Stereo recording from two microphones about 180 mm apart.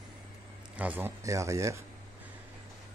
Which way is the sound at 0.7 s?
10° right (ahead or behind).